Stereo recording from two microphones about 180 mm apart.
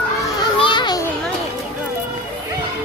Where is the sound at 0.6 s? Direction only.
25° left (ahead or behind).